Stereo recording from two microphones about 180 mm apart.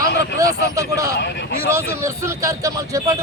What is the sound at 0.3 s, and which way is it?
Speech, 20° right (ahead or behind).